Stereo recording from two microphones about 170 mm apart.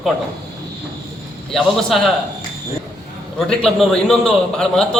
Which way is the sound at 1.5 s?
Centre (ahead or behind).